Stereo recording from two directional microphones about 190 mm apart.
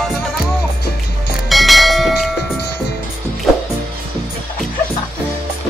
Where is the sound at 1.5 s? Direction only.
Centre (ahead or behind).